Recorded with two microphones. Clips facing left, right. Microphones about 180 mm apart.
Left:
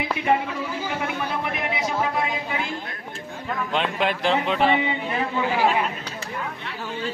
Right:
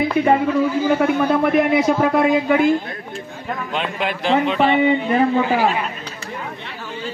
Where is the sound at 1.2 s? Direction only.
50° right (ahead or behind).